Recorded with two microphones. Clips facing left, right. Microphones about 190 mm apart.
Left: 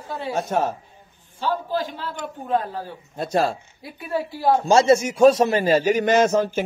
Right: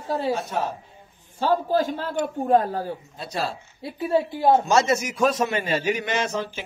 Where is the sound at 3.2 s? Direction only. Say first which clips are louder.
Left 9 dB; 50° left (ahead or behind).